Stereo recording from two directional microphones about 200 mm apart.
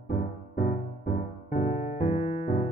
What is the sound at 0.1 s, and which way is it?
Music, 55° left (ahead or behind).